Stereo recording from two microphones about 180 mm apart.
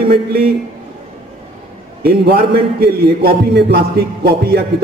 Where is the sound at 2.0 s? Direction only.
60° right (ahead or behind).